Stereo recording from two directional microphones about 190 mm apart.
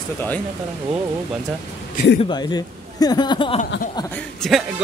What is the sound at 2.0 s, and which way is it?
Speech, 50° left (ahead or behind).